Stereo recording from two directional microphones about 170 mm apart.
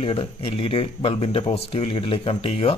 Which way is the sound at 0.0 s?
30° left (ahead or behind).